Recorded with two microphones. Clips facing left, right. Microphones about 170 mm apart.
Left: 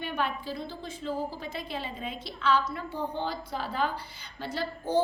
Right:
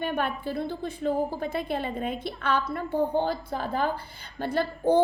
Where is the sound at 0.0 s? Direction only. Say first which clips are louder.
Right 4 dB; 55° right (ahead or behind).